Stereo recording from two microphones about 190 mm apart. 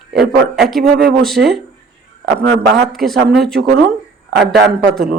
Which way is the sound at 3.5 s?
55° right (ahead or behind).